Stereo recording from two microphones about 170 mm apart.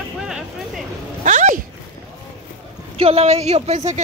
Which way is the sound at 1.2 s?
45° right (ahead or behind).